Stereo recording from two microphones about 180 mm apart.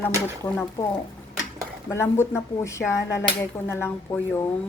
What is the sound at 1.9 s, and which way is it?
A woman's voice, 15° left (ahead or behind).